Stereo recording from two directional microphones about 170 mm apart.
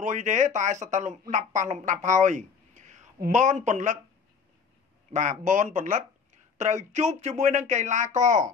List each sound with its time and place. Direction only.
0.0 s speech: 45° right (ahead or behind)
2.0 s a sound: 45° right (ahead or behind)
3.3 s speech: 45° right (ahead or behind)
5.1 s speech: 45° right (ahead or behind)